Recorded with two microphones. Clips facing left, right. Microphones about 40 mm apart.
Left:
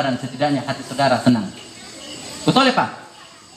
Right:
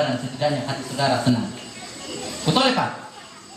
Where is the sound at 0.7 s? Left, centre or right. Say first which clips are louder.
Left 4 dB; left.